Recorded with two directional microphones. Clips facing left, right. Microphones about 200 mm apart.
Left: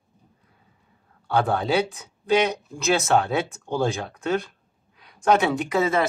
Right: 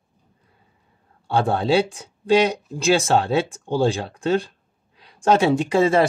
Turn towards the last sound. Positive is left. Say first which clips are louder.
# right 5 dB
turn(degrees=-30)  # may be behind; listen again after turning